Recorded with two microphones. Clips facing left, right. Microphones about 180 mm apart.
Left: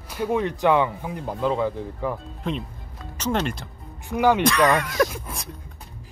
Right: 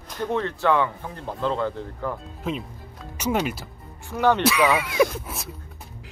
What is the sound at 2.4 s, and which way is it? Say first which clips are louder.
Speech: even; 5° right (ahead or behind).